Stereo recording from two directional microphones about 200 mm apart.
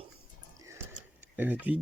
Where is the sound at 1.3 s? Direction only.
10° right (ahead or behind).